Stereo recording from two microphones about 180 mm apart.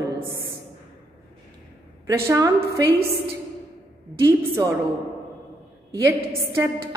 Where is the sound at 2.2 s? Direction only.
20° right (ahead or behind).